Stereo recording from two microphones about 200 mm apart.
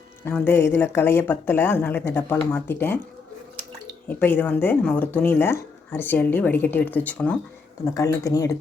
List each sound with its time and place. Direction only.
0.3 s speech: 10° left (ahead or behind)
4.2 s speech: 10° left (ahead or behind)